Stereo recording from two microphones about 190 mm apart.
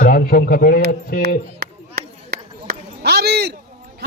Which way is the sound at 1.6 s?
55° right (ahead or behind).